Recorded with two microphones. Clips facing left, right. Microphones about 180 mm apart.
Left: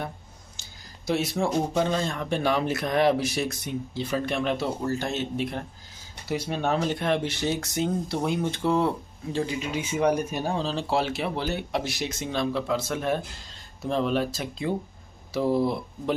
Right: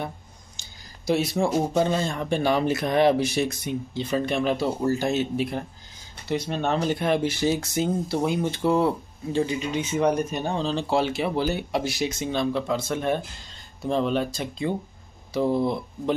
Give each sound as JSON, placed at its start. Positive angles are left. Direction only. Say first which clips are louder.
{"t": 0.6, "sound": "speech", "louder": "even", "side_deg": 0}
{"t": 6.2, "sound": "speech", "louder": "right 1 dB", "side_deg": 10}